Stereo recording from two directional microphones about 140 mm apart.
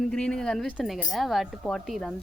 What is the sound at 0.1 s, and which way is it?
A woman's voice, 5° left (ahead or behind).